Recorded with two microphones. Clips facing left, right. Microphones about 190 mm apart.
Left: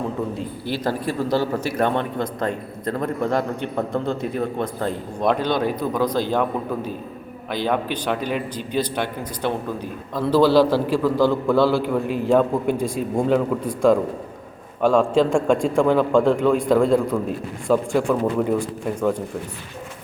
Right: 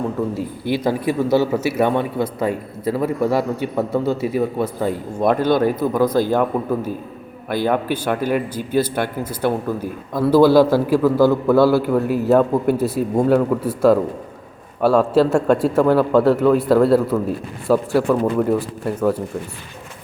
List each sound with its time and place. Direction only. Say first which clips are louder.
0.3 s a man's voice: right 5 dB; 15° right (ahead or behind)
7.5 s a man's voice: right 4 dB; 10° right (ahead or behind)
12.0 s a man's voice: right 4 dB; 40° right (ahead or behind)
12.3 s a man's voice: right 3 dB; 5° right (ahead or behind)